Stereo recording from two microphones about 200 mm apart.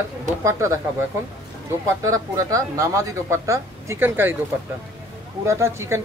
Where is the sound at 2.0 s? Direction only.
15° right (ahead or behind).